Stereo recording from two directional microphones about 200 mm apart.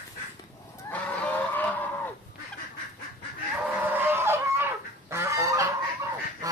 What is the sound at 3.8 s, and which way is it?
Goose, 10° right (ahead or behind).